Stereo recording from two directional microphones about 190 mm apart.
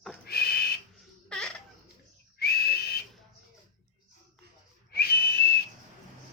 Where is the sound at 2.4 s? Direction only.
55° left (ahead or behind).